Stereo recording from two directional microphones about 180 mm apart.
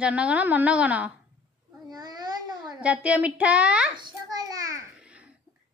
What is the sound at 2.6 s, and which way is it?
Speech, 5° right (ahead or behind).